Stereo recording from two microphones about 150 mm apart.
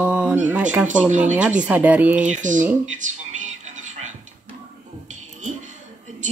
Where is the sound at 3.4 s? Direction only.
55° right (ahead or behind).